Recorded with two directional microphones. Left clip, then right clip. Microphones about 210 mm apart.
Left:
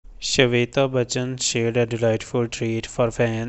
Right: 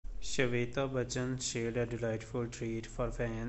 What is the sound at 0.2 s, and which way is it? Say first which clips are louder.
Speech: left 15 dB; 40° left (ahead or behind).